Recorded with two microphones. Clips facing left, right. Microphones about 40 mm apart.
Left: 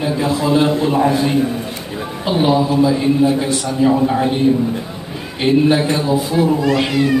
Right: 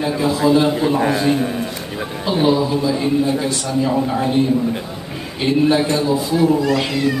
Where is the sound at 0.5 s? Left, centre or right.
Centre.